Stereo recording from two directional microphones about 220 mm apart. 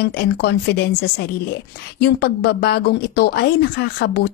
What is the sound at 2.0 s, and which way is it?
A woman's voice, 45° left (ahead or behind).